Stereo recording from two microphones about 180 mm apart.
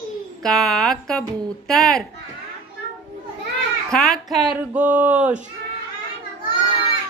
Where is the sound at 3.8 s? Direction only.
5° left (ahead or behind).